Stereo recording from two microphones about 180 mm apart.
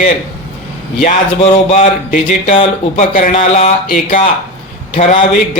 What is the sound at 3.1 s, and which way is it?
Speech, 50° left (ahead or behind).